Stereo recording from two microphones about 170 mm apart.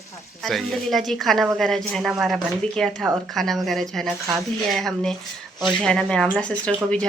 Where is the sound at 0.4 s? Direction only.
Centre (ahead or behind).